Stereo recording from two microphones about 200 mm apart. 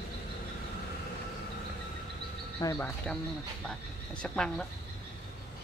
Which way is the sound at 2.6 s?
20° left (ahead or behind).